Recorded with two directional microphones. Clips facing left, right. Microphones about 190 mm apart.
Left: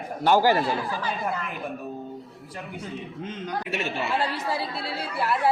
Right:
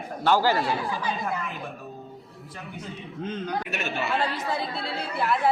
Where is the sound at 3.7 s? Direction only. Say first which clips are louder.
Left 1 dB; 30° left (ahead or behind).